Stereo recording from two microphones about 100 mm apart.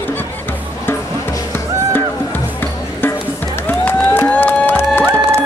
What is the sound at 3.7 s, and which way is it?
Music, 15° left (ahead or behind).